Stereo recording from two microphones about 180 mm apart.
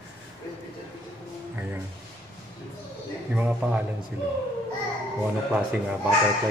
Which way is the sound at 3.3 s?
5° right (ahead or behind).